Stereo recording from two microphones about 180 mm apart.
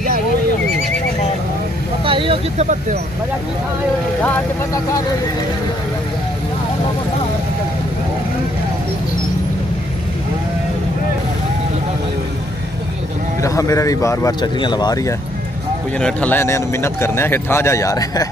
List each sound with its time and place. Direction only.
2.0 s speech: 30° right (ahead or behind)
13.4 s speech: 20° left (ahead or behind)
16.0 s a man's voice: 5° left (ahead or behind)